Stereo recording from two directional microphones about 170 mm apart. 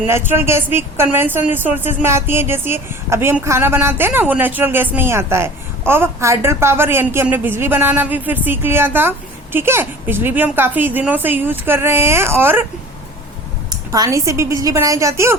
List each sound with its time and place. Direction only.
0.1 s speech: 15° right (ahead or behind)
13.7 s speech: 20° right (ahead or behind)